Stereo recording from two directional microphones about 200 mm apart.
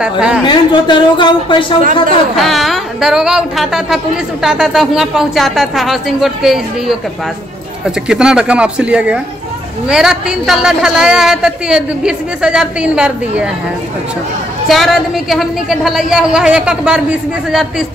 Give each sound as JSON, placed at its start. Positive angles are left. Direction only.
{"t": 0.0, "sound": "a woman's voice", "side_deg": -5}
{"t": 0.5, "sound": "speech", "side_deg": 25}
{"t": 2.3, "sound": "a woman's voice", "side_deg": 0}
{"t": 8.1, "sound": "a woman's voice", "side_deg": -5}
{"t": 14.7, "sound": "a woman's voice", "side_deg": 0}